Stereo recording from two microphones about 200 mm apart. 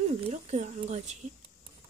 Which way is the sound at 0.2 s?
35° right (ahead or behind).